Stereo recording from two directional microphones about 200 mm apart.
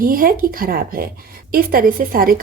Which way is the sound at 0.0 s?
45° right (ahead or behind).